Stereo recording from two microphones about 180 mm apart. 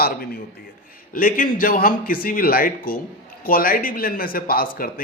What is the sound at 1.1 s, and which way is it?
Speech, 50° left (ahead or behind).